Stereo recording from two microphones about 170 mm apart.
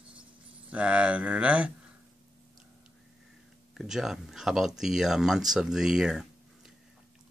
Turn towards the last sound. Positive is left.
turn(degrees=-5)  # may be behind; listen again after turning